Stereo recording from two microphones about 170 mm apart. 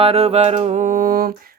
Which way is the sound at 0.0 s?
35° right (ahead or behind).